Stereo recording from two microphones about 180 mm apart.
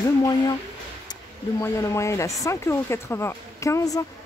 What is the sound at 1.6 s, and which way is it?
A woman's voice, 15° left (ahead or behind).